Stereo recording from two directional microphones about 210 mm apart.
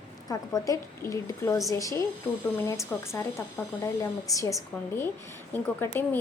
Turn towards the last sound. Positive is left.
turn(degrees=10)  # may be behind; listen again after turning